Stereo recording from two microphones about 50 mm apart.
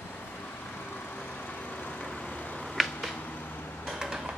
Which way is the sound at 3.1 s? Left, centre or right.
Left.